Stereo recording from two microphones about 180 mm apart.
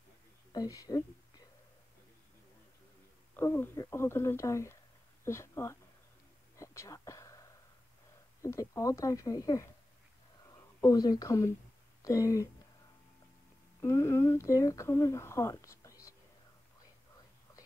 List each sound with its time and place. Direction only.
0.5 s speech: 20° left (ahead or behind)
3.3 s speech: 10° left (ahead or behind)
6.6 s a sound: 15° left (ahead or behind)
8.4 s speech: 15° left (ahead or behind)
13.7 s speech: 15° left (ahead or behind)